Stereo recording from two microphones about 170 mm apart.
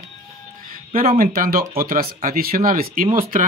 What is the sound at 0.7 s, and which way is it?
Speech, 55° right (ahead or behind).